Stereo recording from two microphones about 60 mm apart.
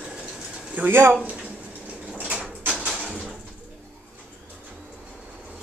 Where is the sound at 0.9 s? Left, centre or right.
Right.